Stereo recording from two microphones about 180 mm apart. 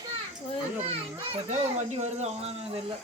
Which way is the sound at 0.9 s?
40° right (ahead or behind).